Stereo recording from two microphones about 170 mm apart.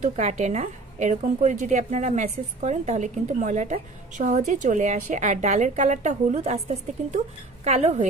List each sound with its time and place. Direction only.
0.0 s a woman's voice: 45° right (ahead or behind)